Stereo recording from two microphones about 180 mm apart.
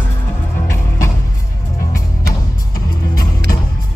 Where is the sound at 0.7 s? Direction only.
15° left (ahead or behind).